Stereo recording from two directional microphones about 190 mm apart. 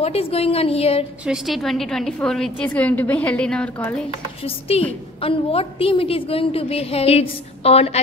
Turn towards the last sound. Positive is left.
turn(degrees=30)  # may be behind; listen again after turning